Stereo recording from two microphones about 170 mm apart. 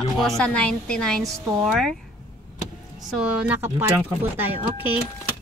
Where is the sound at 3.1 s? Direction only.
5° right (ahead or behind).